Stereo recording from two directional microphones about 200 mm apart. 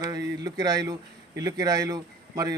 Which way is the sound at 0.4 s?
20° right (ahead or behind).